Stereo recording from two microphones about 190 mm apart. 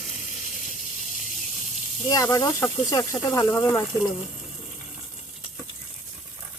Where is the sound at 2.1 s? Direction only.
20° left (ahead or behind).